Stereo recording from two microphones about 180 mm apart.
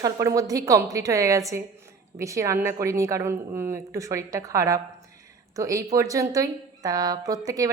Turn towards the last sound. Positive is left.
turn(degrees=-20)  # may be behind; listen again after turning